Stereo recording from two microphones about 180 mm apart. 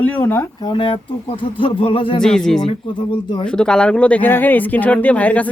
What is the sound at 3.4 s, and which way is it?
Speech, 5° left (ahead or behind).